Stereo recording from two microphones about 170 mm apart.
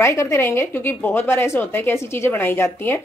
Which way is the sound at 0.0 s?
15° left (ahead or behind).